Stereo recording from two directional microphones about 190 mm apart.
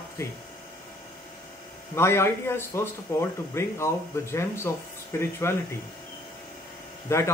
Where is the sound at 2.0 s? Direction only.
15° left (ahead or behind).